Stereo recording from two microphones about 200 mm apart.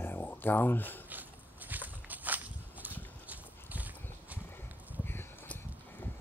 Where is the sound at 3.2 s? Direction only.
10° right (ahead or behind).